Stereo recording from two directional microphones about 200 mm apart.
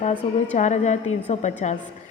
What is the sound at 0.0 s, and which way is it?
A woman's voice, 35° left (ahead or behind).